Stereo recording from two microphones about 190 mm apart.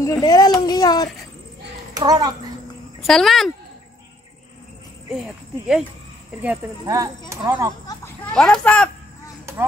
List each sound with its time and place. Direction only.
0.0 s a sound: 20° left (ahead or behind)
2.0 s a child's voice: 20° right (ahead or behind)
3.0 s speech: centre (ahead or behind)
5.1 s speech: centre (ahead or behind)
6.9 s speech: 15° right (ahead or behind)
8.3 s speech: 5° left (ahead or behind)